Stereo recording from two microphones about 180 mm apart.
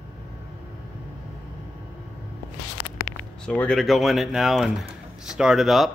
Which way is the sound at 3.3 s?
5° left (ahead or behind).